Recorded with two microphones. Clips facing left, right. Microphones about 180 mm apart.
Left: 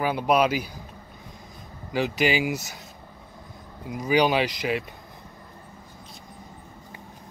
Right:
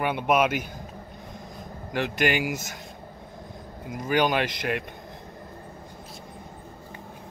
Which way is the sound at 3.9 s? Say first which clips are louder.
Left 2 dB; centre (ahead or behind).